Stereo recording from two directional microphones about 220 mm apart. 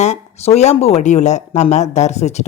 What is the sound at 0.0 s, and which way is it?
Speech, 30° left (ahead or behind).